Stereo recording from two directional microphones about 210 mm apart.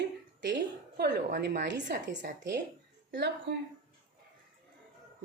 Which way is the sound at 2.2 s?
55° right (ahead or behind).